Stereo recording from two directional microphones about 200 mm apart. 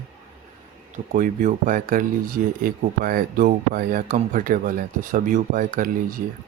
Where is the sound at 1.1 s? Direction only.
40° right (ahead or behind).